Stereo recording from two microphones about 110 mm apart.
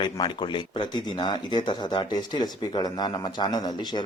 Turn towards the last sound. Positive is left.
turn(degrees=40)  # may be behind; listen again after turning